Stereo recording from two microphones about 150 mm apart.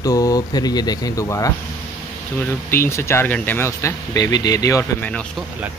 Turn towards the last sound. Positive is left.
turn(degrees=20)  # may be behind; listen again after turning